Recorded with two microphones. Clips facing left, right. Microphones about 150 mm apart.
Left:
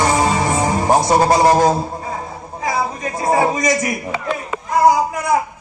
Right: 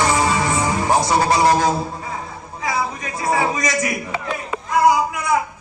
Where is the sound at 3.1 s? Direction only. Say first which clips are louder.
Left 4 dB; 45° left (ahead or behind).